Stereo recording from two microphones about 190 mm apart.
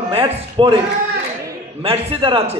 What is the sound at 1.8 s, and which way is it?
Speech, 30° right (ahead or behind).